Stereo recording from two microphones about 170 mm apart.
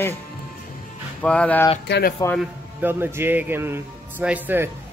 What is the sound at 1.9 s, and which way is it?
Speech, 75° left (ahead or behind).